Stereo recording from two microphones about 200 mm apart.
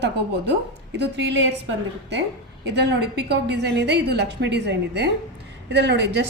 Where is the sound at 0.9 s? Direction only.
60° right (ahead or behind).